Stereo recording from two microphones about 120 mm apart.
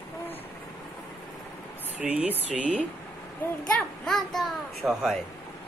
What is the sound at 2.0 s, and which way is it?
Speech, 10° right (ahead or behind).